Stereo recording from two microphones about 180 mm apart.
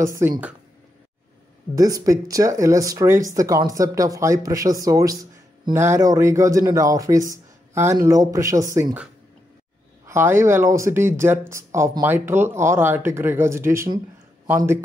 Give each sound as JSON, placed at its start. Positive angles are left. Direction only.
{"t": 0.0, "sound": "speech", "side_deg": -15}
{"t": 1.8, "sound": "speech", "side_deg": -20}
{"t": 10.0, "sound": "speech", "side_deg": -15}